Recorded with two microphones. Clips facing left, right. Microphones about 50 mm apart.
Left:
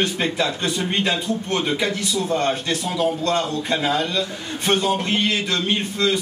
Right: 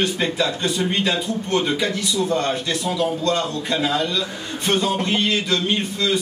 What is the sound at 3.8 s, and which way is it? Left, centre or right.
Speech, centre.